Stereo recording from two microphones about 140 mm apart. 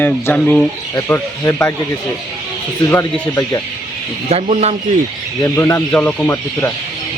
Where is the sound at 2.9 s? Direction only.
20° left (ahead or behind).